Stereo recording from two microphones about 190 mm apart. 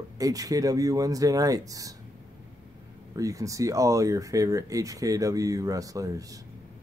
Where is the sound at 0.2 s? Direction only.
20° right (ahead or behind).